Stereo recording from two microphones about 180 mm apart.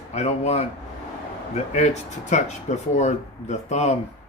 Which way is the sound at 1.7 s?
40° left (ahead or behind).